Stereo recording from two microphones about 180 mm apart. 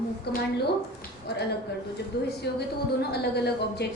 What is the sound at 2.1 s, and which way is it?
A woman's voice, 60° left (ahead or behind).